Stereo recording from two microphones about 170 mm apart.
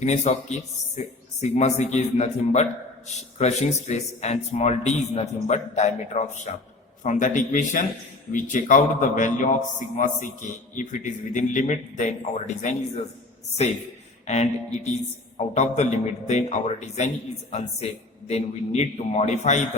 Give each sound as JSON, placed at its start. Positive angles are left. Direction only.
{"t": 0.0, "sound": "a man's voice", "side_deg": 40}
{"t": 14.3, "sound": "speech", "side_deg": 40}